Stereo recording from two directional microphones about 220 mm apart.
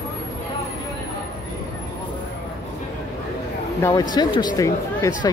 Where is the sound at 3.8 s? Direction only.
15° left (ahead or behind).